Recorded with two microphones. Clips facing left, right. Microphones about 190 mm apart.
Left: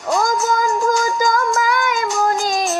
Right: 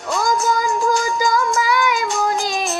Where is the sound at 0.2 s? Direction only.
50° left (ahead or behind).